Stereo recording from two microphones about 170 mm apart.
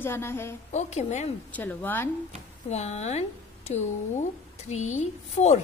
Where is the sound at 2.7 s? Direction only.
40° left (ahead or behind).